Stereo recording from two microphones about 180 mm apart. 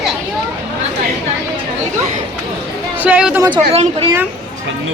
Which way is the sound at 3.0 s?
10° right (ahead or behind).